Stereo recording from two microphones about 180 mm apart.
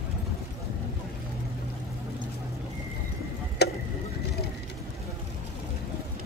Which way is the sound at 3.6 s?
65° left (ahead or behind).